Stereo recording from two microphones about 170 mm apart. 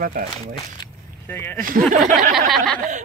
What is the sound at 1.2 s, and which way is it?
Speech, 15° left (ahead or behind).